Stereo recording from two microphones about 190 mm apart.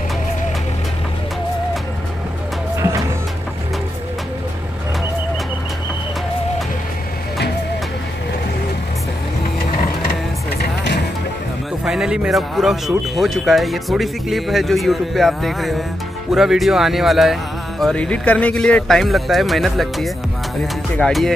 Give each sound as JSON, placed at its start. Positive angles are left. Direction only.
{"t": 10.6, "sound": "music", "side_deg": 60}
{"t": 11.8, "sound": "speech", "side_deg": -5}